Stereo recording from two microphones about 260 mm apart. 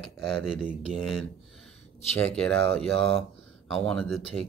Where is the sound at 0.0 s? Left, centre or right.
Centre.